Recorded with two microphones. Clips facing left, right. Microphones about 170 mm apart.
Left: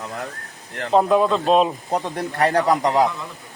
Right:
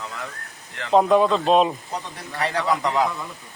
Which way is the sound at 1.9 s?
50° left (ahead or behind).